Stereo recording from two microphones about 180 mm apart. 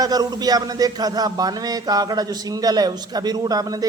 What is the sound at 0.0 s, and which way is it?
Speech, 20° right (ahead or behind).